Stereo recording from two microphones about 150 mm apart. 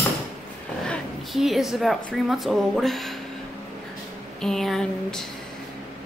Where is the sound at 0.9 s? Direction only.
Centre (ahead or behind).